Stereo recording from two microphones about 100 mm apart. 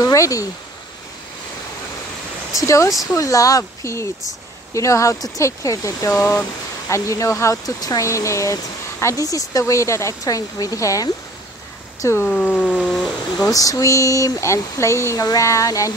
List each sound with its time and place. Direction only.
0.0 s speech: 35° left (ahead or behind)
2.6 s speech: 30° left (ahead or behind)
12.3 s speech: 10° left (ahead or behind)
13.5 s speech: 35° left (ahead or behind)